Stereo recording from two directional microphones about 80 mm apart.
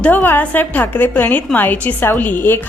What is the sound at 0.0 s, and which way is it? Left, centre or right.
A woman's voice, left.